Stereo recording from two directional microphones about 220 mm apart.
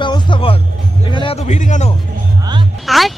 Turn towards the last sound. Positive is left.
turn(degrees=0)  # may be behind; listen again after turning